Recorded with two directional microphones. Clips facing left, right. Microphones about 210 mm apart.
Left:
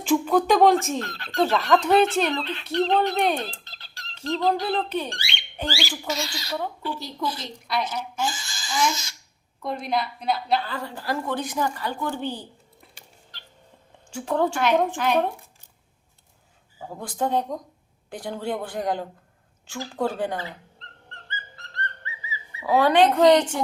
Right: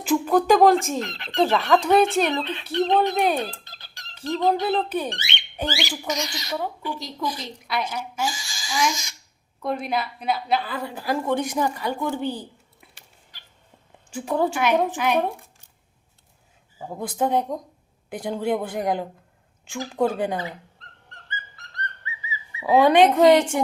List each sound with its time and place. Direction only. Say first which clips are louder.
0.0 s speech: even; centre (ahead or behind)
0.9 s speech: right 1 dB; 20° right (ahead or behind)
1.5 s speech: right 1 dB; centre (ahead or behind)
2.3 s a woman's voice: right 1 dB; 15° right (ahead or behind)
3.2 s a woman's voice: right 2 dB; 10° right (ahead or behind)
9.6 s a woman's voice: right 1 dB; 5° right (ahead or behind)
14.1 s a woman's voice: even; 10° right (ahead or behind)
16.8 s a woman's voice: right 3 dB; 10° right (ahead or behind)
22.0 s whistling: right 1 dB; 15° right (ahead or behind)
23.1 s a woman's voice: right 1 dB; 10° right (ahead or behind)